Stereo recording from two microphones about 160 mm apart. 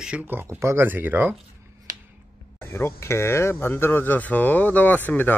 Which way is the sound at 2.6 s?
15° left (ahead or behind).